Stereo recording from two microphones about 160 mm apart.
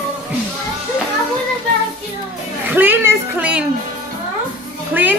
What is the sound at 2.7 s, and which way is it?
Speech, 10° right (ahead or behind).